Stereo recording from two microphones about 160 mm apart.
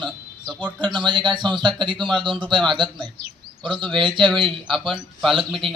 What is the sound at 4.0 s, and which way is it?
Speech, 30° right (ahead or behind).